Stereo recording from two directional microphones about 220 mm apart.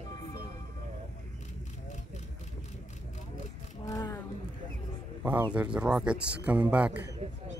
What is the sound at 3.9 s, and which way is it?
Roaring cats, 15° left (ahead or behind).